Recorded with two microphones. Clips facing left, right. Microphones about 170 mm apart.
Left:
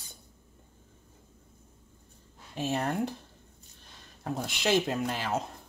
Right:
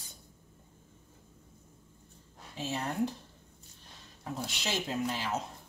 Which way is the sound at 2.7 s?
60° left (ahead or behind).